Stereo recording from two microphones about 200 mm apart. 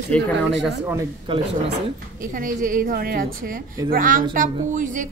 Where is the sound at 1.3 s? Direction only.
25° right (ahead or behind).